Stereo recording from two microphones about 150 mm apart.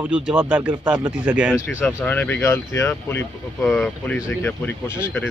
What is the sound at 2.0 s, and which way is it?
Speech, 10° left (ahead or behind).